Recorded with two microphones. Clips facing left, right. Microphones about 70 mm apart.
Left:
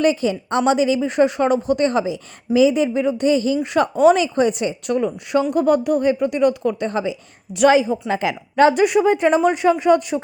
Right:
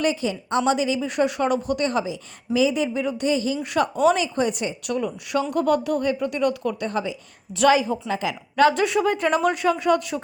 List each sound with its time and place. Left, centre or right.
0.0 s a woman's voice: left
4.9 s speech: left
8.0 s a woman's voice: left
8.7 s speech: centre